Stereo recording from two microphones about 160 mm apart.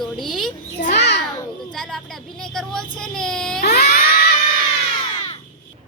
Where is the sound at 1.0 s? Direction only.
90° left.